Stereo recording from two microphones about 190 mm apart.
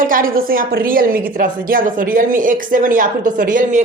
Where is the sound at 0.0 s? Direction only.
50° right (ahead or behind).